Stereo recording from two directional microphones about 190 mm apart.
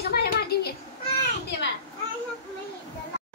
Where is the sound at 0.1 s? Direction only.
55° left (ahead or behind).